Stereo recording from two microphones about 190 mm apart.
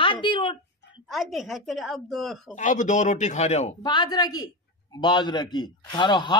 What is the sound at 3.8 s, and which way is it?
A man's voice, 25° left (ahead or behind).